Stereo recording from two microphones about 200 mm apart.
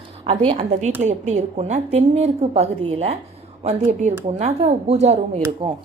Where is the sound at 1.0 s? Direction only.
35° right (ahead or behind).